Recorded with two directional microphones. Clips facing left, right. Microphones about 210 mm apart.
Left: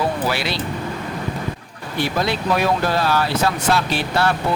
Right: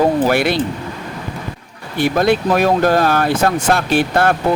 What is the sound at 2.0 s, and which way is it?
Speech, 50° right (ahead or behind).